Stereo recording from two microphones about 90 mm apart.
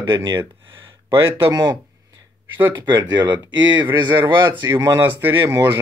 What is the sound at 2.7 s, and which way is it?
Speech, 55° right (ahead or behind).